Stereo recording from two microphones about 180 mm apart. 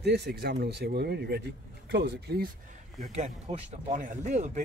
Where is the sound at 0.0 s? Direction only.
70° right (ahead or behind).